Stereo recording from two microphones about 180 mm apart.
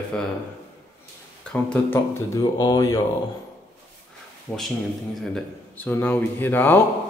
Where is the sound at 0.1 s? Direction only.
5° left (ahead or behind).